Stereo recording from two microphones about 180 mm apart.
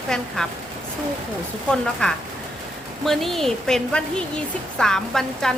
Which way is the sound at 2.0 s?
5° left (ahead or behind).